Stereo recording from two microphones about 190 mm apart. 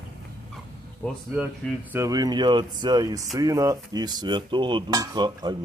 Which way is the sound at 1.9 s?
15° right (ahead or behind).